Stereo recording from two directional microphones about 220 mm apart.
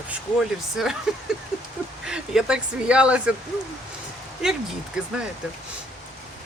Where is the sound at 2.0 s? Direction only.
5° right (ahead or behind).